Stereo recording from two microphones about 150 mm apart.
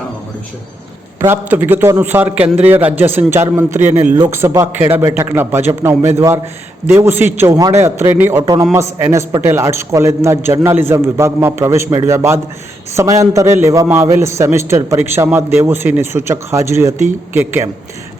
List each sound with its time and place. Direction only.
1.2 s a man's voice: 15° right (ahead or behind)